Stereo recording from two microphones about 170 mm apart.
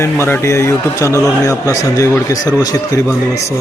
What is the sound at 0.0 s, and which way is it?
A man's voice, 15° left (ahead or behind).